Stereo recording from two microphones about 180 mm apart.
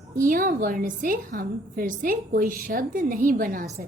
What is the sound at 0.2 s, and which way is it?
A woman's voice, 50° right (ahead or behind).